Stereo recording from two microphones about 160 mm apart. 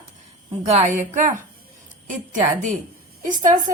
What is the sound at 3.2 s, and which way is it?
Speech, 55° right (ahead or behind).